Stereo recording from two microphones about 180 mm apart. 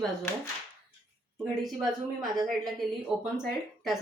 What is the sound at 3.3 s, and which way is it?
Speech, centre (ahead or behind).